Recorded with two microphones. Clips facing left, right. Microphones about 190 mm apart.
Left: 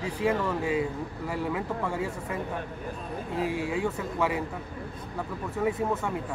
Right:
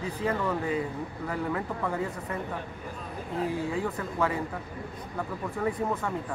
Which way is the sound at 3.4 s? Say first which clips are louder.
Even; 80° left.